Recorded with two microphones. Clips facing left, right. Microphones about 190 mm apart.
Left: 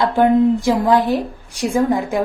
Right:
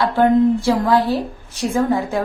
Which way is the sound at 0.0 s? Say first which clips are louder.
Left 1 dB; 15° left (ahead or behind).